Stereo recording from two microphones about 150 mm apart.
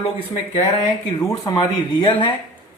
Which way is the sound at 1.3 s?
25° left (ahead or behind).